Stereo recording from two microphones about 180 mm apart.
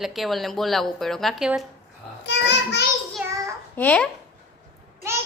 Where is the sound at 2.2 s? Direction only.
75° left (ahead or behind).